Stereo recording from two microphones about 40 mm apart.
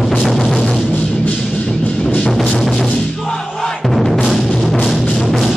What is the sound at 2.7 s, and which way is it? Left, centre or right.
Music, centre.